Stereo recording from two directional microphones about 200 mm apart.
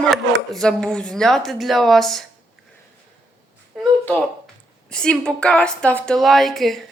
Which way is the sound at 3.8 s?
10° left (ahead or behind).